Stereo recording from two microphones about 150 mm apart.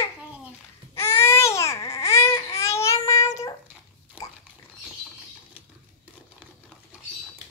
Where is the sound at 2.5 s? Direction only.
20° left (ahead or behind).